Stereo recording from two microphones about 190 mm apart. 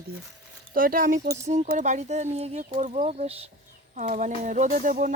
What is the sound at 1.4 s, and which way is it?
Speech, 35° right (ahead or behind).